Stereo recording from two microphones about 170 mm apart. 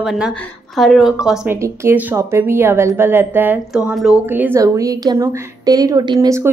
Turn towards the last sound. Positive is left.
turn(degrees=-15)  # may be behind; listen again after turning